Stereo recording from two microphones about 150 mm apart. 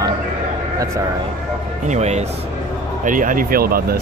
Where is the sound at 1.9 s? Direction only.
50° right (ahead or behind).